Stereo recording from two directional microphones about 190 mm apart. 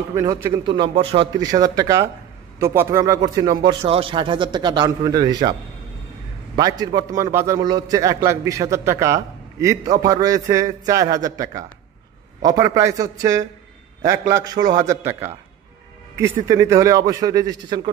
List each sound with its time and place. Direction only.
0.1 s a man's voice: 15° right (ahead or behind)